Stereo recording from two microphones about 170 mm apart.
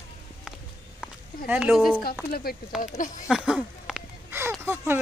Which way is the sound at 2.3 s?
60° left (ahead or behind).